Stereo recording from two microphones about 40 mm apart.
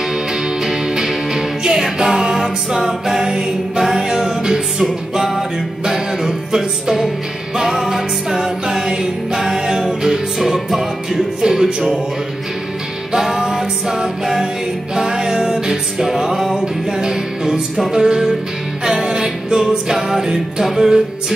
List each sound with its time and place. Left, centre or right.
0.1 s music: centre
13.1 s music: centre